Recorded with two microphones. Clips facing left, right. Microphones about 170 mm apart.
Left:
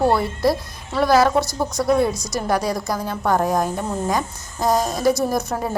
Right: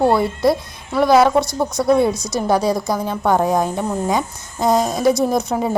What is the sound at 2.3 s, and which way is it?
Speech, 25° right (ahead or behind).